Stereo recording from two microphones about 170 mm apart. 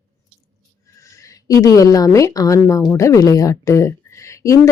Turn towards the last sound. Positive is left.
turn(degrees=20)  # may be behind; listen again after turning